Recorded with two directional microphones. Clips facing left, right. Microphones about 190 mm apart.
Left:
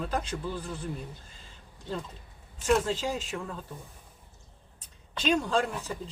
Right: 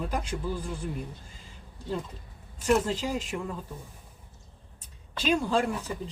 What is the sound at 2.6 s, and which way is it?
Speech, 10° right (ahead or behind).